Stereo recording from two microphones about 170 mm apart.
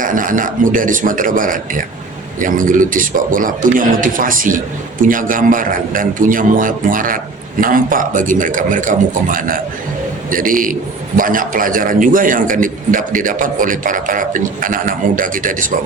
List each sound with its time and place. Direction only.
0.0 s a man's voice: 50° right (ahead or behind)